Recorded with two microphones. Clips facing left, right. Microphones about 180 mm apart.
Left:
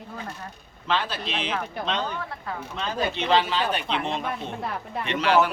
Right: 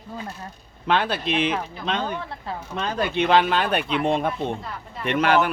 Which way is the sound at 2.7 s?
55° right (ahead or behind).